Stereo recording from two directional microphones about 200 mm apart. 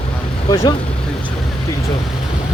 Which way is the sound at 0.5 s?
15° left (ahead or behind).